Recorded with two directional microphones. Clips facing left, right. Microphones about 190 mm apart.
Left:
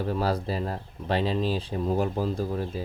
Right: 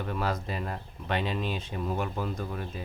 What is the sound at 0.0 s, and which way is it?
Speech, 35° left (ahead or behind).